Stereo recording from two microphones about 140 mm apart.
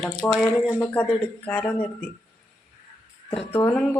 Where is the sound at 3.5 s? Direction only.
15° left (ahead or behind).